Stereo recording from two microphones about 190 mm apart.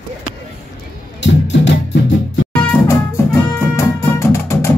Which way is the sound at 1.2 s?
70° left (ahead or behind).